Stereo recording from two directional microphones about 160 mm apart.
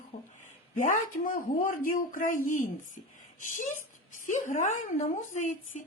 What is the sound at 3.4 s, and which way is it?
A woman's voice, 55° left (ahead or behind).